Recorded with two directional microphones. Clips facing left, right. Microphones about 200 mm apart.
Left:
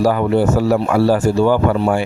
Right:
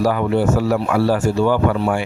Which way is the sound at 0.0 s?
35° left (ahead or behind).